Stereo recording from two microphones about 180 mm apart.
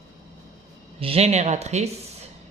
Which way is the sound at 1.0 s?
35° right (ahead or behind).